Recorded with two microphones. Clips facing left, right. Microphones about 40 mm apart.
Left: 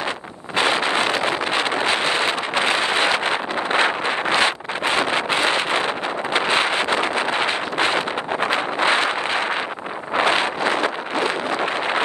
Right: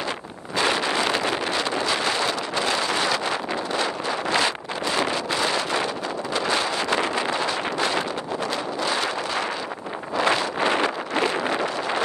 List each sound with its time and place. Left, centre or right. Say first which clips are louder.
0.6 s wind noise: left 3 dB; left